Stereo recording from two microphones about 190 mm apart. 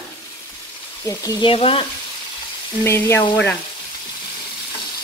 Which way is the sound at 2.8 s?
15° left (ahead or behind).